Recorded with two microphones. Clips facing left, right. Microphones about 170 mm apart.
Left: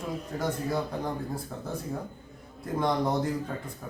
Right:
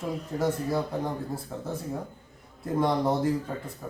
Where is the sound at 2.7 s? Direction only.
5° right (ahead or behind).